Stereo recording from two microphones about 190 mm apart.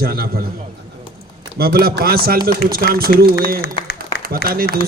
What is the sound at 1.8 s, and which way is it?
A man's voice, 55° right (ahead or behind).